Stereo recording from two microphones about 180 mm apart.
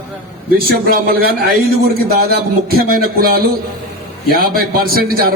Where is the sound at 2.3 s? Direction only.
55° right (ahead or behind).